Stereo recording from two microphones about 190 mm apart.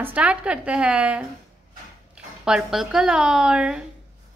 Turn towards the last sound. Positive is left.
turn(degrees=-5)  # may be behind; listen again after turning